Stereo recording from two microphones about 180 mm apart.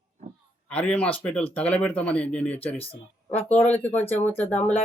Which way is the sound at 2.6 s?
30° left (ahead or behind).